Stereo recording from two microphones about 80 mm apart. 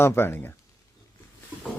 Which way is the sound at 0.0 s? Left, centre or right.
Left.